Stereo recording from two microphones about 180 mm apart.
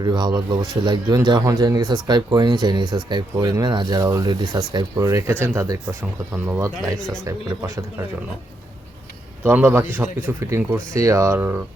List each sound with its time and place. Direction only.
0.0 s speech: 25° right (ahead or behind)
7.0 s speech: centre (ahead or behind)
7.3 s speech: 20° right (ahead or behind)
9.4 s speech: 15° right (ahead or behind)